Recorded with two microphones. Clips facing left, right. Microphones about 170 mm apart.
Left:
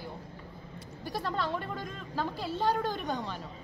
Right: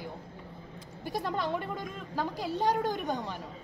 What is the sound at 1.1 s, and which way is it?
A woman's voice, 15° right (ahead or behind).